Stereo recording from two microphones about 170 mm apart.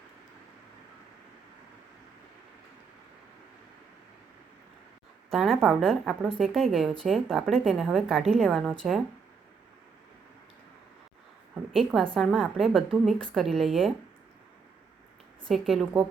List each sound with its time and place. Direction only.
5.3 s a woman's voice: centre (ahead or behind)
11.7 s a woman's voice: centre (ahead or behind)
15.4 s a woman's voice: centre (ahead or behind)